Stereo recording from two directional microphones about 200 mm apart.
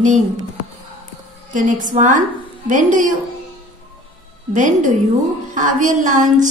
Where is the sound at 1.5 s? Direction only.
40° right (ahead or behind).